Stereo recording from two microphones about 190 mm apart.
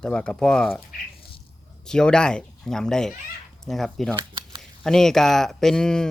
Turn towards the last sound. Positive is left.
turn(degrees=5)  # may be behind; listen again after turning